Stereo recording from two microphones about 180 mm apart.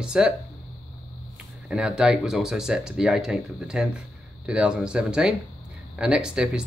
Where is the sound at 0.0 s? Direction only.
5° right (ahead or behind).